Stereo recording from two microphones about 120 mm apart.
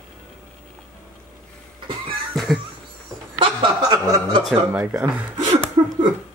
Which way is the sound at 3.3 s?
40° right (ahead or behind).